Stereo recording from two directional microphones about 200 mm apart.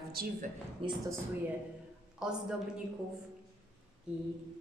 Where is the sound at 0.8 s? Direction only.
25° right (ahead or behind).